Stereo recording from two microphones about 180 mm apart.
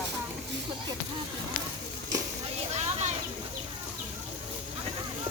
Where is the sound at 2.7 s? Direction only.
40° right (ahead or behind).